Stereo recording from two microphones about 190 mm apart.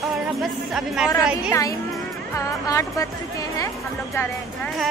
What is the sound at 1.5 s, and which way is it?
Speech, 15° left (ahead or behind).